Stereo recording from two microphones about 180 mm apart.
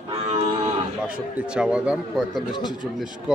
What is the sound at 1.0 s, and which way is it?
A man's voice, 5° right (ahead or behind).